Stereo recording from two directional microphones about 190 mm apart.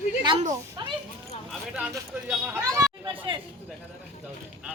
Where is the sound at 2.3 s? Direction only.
10° right (ahead or behind).